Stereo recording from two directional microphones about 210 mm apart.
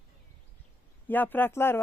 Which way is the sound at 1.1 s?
10° left (ahead or behind).